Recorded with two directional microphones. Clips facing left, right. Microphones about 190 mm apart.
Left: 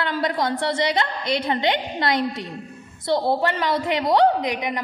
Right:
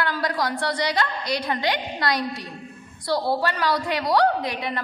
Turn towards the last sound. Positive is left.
turn(degrees=15)  # may be behind; listen again after turning